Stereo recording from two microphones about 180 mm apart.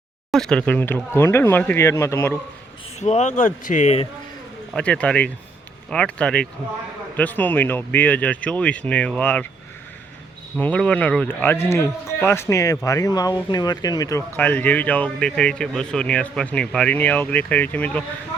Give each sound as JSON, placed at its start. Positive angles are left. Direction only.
{"t": 0.3, "sound": "speech", "side_deg": 5}
{"t": 3.0, "sound": "speech", "side_deg": 40}
{"t": 4.7, "sound": "speech", "side_deg": 5}
{"t": 10.6, "sound": "speech", "side_deg": 5}
{"t": 14.3, "sound": "speech", "side_deg": 10}